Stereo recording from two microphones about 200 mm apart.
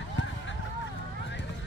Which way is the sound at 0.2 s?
65° left (ahead or behind).